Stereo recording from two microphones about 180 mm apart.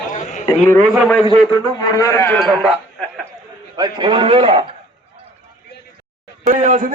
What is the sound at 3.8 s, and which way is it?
Speech, 25° right (ahead or behind).